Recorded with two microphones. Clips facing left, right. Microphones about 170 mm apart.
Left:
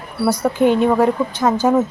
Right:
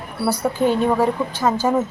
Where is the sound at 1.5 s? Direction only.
10° left (ahead or behind).